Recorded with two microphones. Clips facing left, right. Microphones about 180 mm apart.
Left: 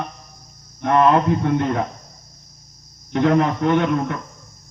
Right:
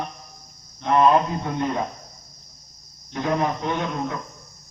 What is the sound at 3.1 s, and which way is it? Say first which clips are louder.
A man's voice: left 6 dB; 70° left (ahead or behind).